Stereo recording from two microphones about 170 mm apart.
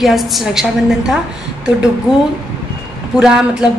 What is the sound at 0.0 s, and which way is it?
A woman's voice, centre (ahead or behind).